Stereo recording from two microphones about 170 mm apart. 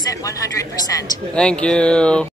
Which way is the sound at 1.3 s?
5° left (ahead or behind).